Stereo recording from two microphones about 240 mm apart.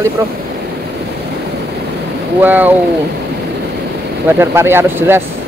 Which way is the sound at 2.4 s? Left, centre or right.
Centre.